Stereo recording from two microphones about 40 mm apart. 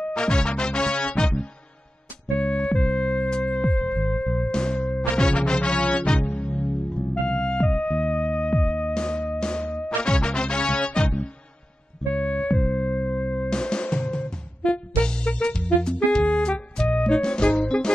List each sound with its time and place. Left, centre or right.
0.1 s music: centre; by 6.9 s left
6.9 s music: left
12.2 s music: left
13.5 s music: centre
13.8 s music: left